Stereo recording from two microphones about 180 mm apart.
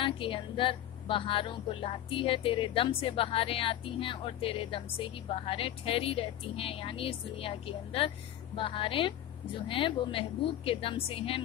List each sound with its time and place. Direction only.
0.0 s a woman's voice: 30° left (ahead or behind)